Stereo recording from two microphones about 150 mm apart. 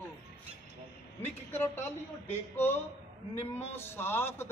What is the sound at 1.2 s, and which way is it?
A man's voice, 15° left (ahead or behind).